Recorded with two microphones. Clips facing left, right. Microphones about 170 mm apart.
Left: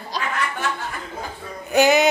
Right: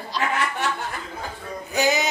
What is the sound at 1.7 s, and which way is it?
Music, 60° left (ahead or behind).